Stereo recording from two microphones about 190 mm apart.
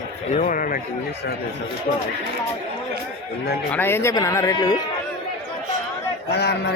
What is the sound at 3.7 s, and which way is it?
Speech, 10° left (ahead or behind).